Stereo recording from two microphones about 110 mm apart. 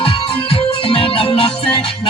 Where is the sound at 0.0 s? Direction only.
50° left (ahead or behind).